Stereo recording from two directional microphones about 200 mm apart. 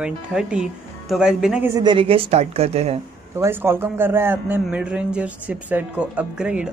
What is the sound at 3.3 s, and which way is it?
A man's voice, 10° right (ahead or behind).